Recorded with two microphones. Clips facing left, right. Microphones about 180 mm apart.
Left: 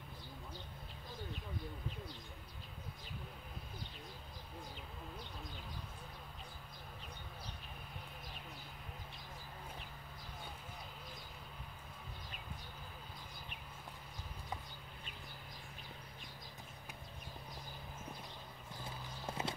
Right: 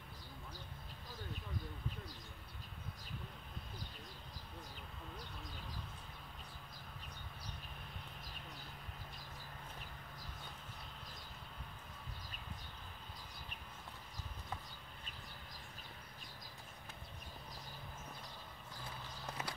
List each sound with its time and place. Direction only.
18.9 s clip-clop: 25° left (ahead or behind)